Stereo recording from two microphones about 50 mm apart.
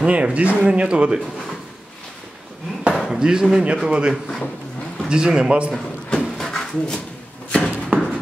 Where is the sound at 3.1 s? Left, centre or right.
Centre.